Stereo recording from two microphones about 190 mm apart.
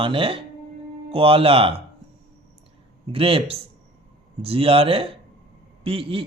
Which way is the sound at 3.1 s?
30° right (ahead or behind).